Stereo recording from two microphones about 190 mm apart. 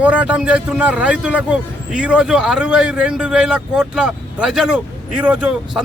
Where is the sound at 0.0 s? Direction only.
5° right (ahead or behind).